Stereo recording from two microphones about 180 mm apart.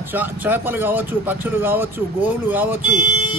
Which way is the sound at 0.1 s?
10° right (ahead or behind).